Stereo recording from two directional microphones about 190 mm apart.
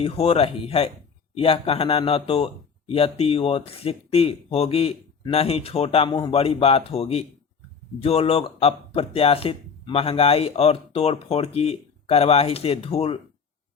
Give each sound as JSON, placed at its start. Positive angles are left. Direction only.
{"t": 0.0, "sound": "speech", "side_deg": 30}